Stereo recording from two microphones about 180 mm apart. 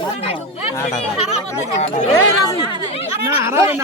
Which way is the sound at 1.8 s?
40° left (ahead or behind).